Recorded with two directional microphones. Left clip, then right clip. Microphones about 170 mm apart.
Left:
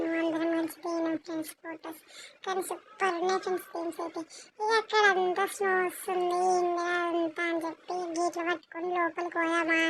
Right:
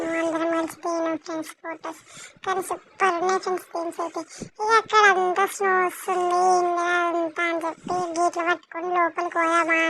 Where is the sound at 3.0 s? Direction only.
20° right (ahead or behind).